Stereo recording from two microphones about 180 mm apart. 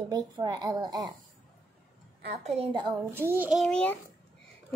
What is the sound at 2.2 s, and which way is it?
Speech, 35° right (ahead or behind).